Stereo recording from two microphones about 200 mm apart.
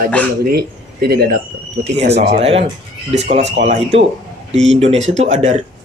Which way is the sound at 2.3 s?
30° right (ahead or behind).